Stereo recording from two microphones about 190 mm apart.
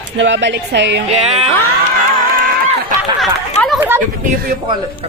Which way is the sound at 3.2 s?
Centre (ahead or behind).